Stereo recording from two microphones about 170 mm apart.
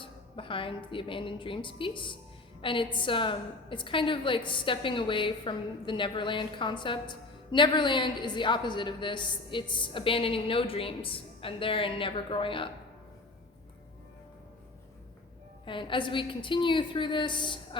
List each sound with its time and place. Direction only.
0.0 s a woman's voice: 30° left (ahead or behind)
15.6 s a woman's voice: 30° left (ahead or behind)